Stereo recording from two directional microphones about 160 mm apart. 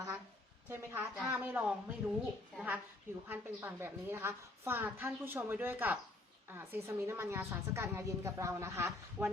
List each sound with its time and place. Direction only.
0.7 s a woman's voice: 15° right (ahead or behind)